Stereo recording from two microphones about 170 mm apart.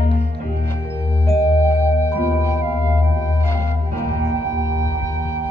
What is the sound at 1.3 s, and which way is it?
Music, 15° left (ahead or behind).